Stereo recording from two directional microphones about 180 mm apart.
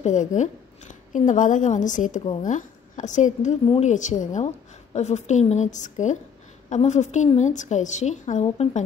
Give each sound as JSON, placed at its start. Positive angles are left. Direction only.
{"t": 0.0, "sound": "a woman's voice", "side_deg": 45}